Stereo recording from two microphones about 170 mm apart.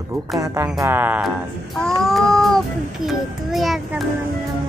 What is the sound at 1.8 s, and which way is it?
A child's voice, centre (ahead or behind).